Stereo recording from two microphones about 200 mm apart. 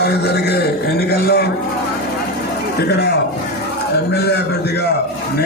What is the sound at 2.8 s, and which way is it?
A man's voice, 55° left (ahead or behind).